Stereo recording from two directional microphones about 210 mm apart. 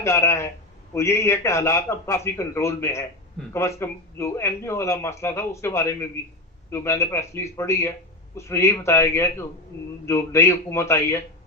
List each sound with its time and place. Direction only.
0.0 s a man's voice: 15° left (ahead or behind)